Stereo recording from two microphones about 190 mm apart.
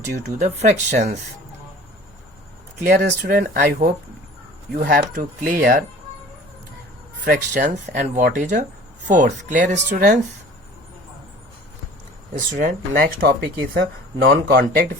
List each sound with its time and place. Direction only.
0.3 s speech: 35° right (ahead or behind)
2.8 s speech: 45° right (ahead or behind)
7.3 s speech: 45° right (ahead or behind)
12.3 s speech: 45° right (ahead or behind)
13.7 s speech: 60° right (ahead or behind)